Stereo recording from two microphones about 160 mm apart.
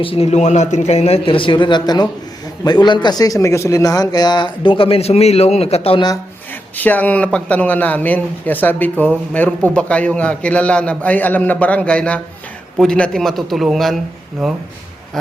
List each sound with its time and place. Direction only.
0.0 s a man's voice: 35° left (ahead or behind)
6.5 s a man's voice: 10° left (ahead or behind)